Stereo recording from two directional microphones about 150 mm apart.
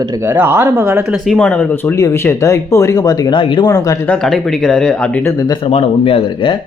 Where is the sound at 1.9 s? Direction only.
20° left (ahead or behind).